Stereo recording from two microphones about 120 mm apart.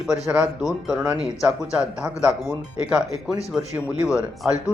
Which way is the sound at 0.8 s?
5° right (ahead or behind).